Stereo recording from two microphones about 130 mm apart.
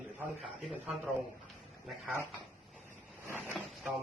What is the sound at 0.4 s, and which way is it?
Speech, centre (ahead or behind).